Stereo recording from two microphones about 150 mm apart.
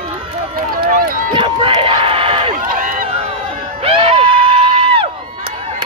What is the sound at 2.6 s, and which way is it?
Run, 65° right (ahead or behind).